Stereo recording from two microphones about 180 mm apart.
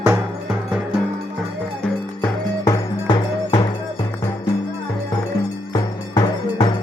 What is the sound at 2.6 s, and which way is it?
Music, 25° left (ahead or behind).